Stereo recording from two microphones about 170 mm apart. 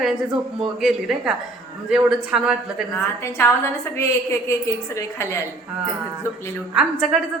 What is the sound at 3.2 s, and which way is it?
A woman's voice, 15° left (ahead or behind).